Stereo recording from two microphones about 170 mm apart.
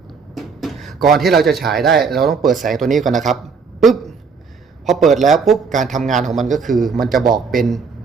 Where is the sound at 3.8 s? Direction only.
Centre (ahead or behind).